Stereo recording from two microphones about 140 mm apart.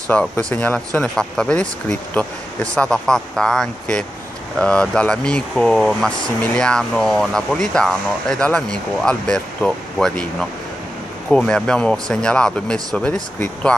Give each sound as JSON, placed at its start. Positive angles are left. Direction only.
{"t": 0.1, "sound": "speech", "side_deg": 10}